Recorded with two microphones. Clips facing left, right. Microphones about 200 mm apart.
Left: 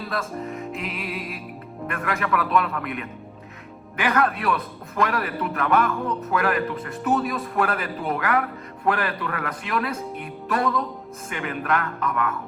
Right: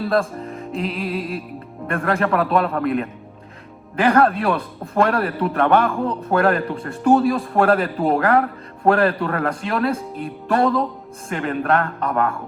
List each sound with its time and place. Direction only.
0.1 s speech: 30° right (ahead or behind)